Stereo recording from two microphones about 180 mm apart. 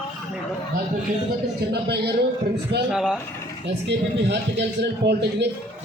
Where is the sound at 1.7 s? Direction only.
65° right (ahead or behind).